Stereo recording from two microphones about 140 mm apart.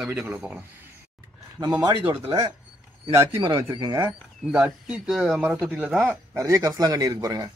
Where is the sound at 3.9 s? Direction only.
10° right (ahead or behind).